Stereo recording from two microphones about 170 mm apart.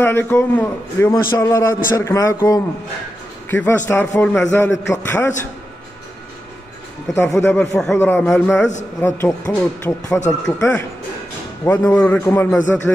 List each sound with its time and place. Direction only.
0.0 s a man's voice: 10° left (ahead or behind)
7.2 s a man's voice: 15° left (ahead or behind)
7.7 s a man's voice: 5° left (ahead or behind)